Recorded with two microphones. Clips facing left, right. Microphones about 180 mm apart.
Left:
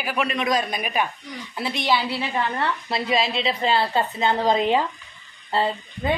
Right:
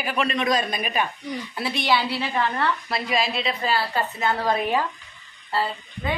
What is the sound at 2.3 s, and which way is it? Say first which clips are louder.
A woman's voice: right 2 dB; 25° left (ahead or behind).